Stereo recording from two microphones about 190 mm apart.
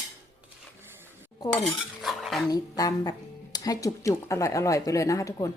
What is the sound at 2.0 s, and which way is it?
Cutlery, centre (ahead or behind).